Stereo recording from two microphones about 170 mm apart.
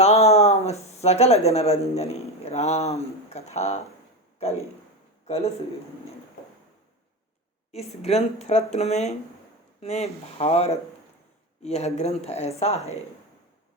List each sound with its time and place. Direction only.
0.0 s speech: 40° left (ahead or behind)
5.2 s speech: 35° left (ahead or behind)
7.7 s speech: 40° left (ahead or behind)